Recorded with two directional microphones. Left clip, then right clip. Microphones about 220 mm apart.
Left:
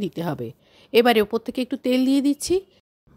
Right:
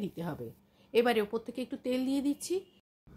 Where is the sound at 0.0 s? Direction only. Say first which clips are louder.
Left 11 dB; 40° left (ahead or behind).